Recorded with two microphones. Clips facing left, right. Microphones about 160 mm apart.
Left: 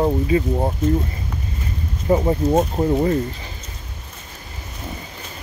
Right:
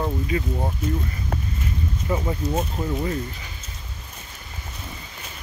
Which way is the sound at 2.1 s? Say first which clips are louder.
Left 9 dB; 35° left (ahead or behind).